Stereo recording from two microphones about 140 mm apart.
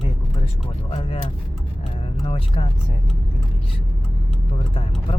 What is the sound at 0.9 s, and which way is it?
Speech, 40° left (ahead or behind).